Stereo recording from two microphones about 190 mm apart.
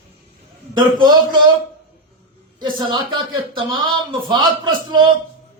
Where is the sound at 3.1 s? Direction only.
25° right (ahead or behind).